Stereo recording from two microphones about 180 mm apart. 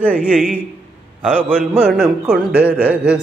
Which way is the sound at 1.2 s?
5° right (ahead or behind).